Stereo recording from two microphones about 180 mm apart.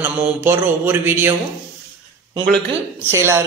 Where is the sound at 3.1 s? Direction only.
15° right (ahead or behind).